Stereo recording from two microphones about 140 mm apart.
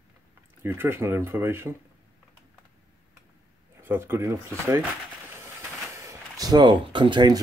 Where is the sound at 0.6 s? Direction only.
15° right (ahead or behind).